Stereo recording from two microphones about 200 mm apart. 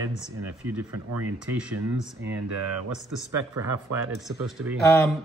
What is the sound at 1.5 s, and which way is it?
Speech, 5° right (ahead or behind).